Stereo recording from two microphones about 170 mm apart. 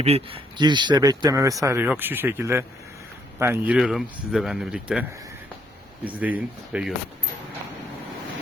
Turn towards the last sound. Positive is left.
turn(degrees=-10)  # may be behind; listen again after turning